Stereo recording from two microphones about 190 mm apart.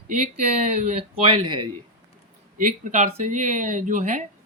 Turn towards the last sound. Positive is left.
turn(degrees=-40)  # may be behind; listen again after turning